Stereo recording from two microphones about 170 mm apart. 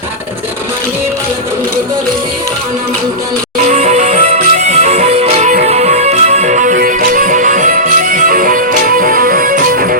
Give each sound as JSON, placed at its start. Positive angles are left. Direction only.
{"t": 3.6, "sound": "music", "side_deg": -45}